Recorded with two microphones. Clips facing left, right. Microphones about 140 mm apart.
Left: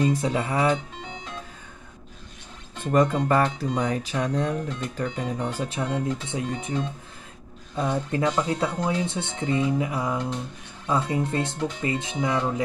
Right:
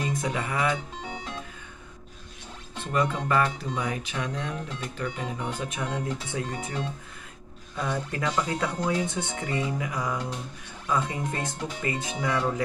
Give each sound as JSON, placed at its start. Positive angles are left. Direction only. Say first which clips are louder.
{"t": 0.0, "sound": "speech", "louder": "left 6 dB", "side_deg": 30}
{"t": 2.8, "sound": "speech", "louder": "left 6 dB", "side_deg": 45}
{"t": 6.2, "sound": "speech", "louder": "left 3 dB", "side_deg": 20}